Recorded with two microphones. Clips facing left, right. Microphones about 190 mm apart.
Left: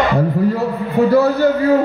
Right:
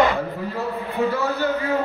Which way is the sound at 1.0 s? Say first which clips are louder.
Left 11 dB; 35° left (ahead or behind).